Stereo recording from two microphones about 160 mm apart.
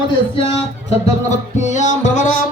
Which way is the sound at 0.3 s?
40° left (ahead or behind).